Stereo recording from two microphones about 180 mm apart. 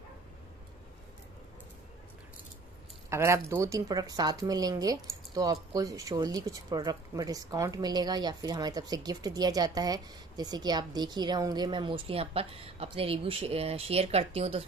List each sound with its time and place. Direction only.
3.1 s a woman's voice: 15° right (ahead or behind); by 14.6 s 35° right (ahead or behind)